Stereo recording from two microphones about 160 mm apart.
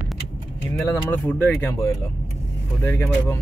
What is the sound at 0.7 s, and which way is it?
Speech, 10° left (ahead or behind).